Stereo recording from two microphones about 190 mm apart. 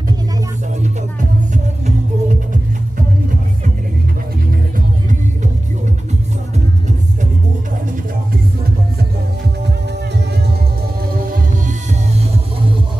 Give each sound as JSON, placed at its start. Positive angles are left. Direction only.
{"t": 1.5, "sound": "music", "side_deg": -40}